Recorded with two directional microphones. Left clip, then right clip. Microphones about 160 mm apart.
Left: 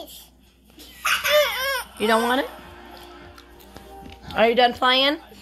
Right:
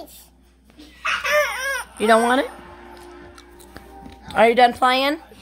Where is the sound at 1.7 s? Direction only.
25° right (ahead or behind).